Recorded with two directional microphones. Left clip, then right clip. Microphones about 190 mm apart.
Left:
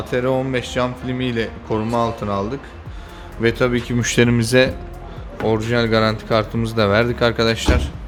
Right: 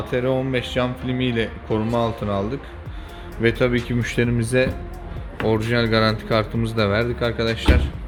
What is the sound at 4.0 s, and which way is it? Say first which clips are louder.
Speech: left 6 dB; 20° left (ahead or behind).